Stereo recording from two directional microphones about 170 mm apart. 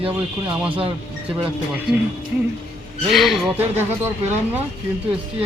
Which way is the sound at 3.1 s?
Centre (ahead or behind).